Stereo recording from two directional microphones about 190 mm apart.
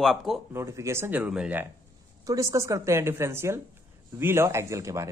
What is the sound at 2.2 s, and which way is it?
A woman's voice, 15° right (ahead or behind).